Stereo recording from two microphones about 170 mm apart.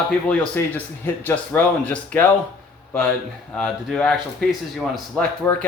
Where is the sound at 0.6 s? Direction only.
15° left (ahead or behind).